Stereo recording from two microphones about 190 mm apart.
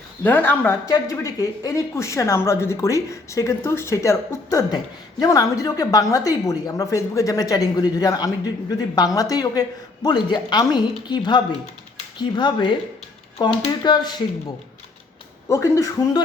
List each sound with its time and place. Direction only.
0.3 s a woman's voice: 10° left (ahead or behind)
15.4 s speech: 15° left (ahead or behind)